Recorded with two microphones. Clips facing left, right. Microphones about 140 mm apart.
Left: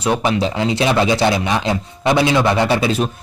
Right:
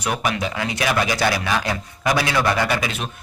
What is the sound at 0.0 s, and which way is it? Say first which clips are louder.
A man's voice: left 6 dB; 25° left (ahead or behind).